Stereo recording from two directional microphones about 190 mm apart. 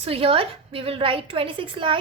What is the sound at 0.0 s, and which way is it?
A woman's voice, 30° right (ahead or behind).